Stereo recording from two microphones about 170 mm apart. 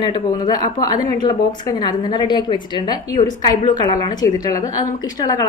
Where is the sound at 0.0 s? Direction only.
25° left (ahead or behind).